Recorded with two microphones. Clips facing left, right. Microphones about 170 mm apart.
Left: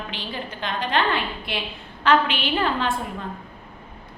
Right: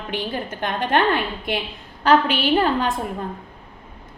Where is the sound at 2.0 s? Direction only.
40° right (ahead or behind).